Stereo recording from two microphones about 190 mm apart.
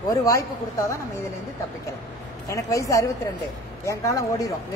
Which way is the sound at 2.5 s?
15° left (ahead or behind).